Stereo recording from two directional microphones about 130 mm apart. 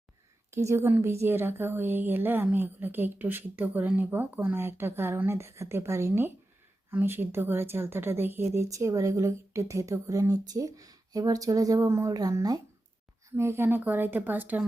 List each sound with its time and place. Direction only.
0.5 s a woman's voice: 20° right (ahead or behind)